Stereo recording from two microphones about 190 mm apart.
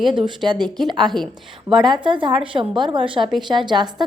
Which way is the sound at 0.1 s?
25° right (ahead or behind).